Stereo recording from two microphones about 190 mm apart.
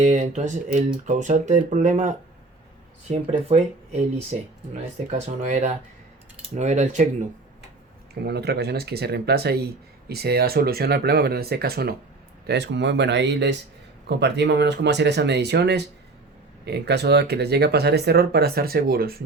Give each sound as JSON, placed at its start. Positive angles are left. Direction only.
{"t": 0.0, "sound": "speech", "side_deg": -40}
{"t": 8.2, "sound": "speech", "side_deg": -60}